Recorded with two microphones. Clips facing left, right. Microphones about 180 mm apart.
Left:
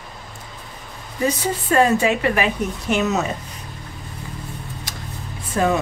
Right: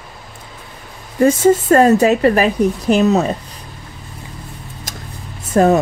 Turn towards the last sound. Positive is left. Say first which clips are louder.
# right 7 dB
turn(degrees=-45)  # may be behind; listen again after turning